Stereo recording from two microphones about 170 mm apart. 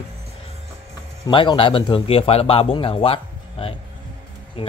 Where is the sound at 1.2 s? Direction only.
30° left (ahead or behind).